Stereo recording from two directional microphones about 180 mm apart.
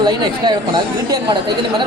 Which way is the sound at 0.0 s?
20° right (ahead or behind).